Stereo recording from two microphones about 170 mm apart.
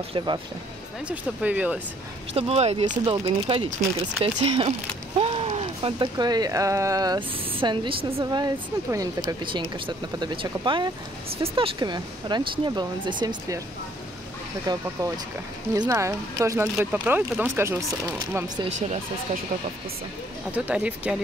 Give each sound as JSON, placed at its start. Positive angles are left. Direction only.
{"t": 0.1, "sound": "speech", "side_deg": -25}
{"t": 1.0, "sound": "speech", "side_deg": -10}
{"t": 2.3, "sound": "speech", "side_deg": -40}
{"t": 14.7, "sound": "speech", "side_deg": -20}
{"t": 20.5, "sound": "speech", "side_deg": -10}